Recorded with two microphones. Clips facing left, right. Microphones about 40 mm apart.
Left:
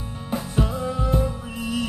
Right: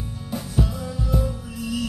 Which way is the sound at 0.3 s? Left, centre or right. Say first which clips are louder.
Left 1 dB; left.